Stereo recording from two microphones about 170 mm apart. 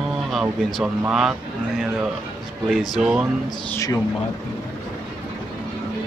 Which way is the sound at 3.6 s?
20° left (ahead or behind).